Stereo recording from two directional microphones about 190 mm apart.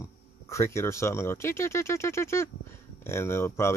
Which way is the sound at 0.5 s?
15° left (ahead or behind).